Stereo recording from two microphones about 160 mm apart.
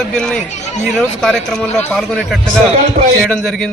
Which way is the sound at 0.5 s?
45° left (ahead or behind).